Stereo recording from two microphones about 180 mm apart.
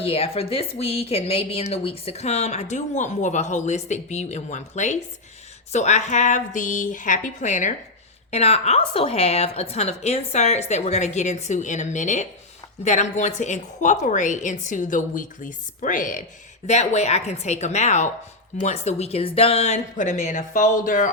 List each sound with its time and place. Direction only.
0.0 s a woman's voice: 30° left (ahead or behind)